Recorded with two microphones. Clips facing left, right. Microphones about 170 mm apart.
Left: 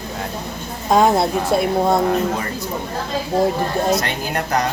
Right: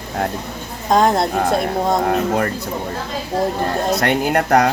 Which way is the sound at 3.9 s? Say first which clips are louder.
Right 5 dB; 60° right (ahead or behind).